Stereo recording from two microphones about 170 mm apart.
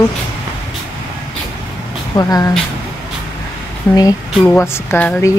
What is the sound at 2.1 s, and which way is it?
Speech, 20° left (ahead or behind).